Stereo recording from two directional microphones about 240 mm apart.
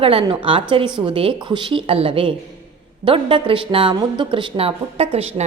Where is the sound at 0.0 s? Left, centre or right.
Right.